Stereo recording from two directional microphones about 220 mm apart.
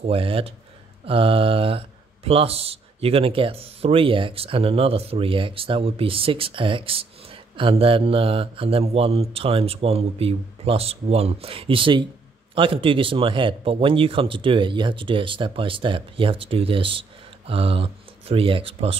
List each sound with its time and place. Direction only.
0.0 s speech: 25° right (ahead or behind)